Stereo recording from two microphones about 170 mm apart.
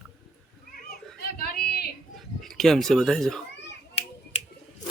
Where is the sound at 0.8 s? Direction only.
65° left (ahead or behind).